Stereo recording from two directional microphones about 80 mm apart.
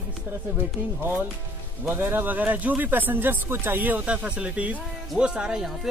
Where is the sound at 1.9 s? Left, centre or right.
Right.